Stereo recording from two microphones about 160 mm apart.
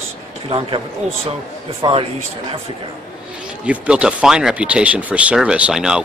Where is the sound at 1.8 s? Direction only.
25° right (ahead or behind).